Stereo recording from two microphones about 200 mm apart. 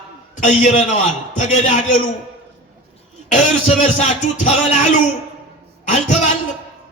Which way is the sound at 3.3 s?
35° left (ahead or behind).